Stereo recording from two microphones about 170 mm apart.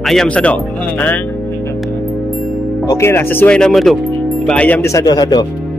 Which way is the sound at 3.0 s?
15° left (ahead or behind).